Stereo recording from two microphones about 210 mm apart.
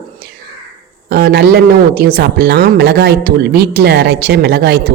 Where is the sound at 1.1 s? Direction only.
50° right (ahead or behind).